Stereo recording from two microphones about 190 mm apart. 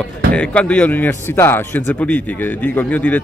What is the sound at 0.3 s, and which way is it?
A man's voice, 5° left (ahead or behind).